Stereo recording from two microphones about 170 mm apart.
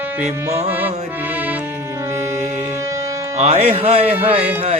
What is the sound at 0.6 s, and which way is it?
Music, 10° right (ahead or behind).